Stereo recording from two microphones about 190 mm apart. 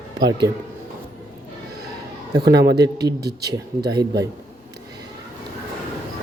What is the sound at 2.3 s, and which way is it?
Speech, 60° right (ahead or behind).